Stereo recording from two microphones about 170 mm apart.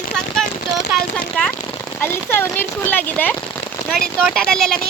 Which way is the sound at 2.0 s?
15° left (ahead or behind).